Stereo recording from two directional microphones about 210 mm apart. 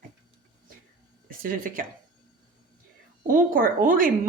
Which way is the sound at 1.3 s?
40° right (ahead or behind).